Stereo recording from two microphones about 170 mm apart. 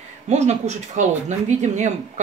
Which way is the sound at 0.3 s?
40° right (ahead or behind).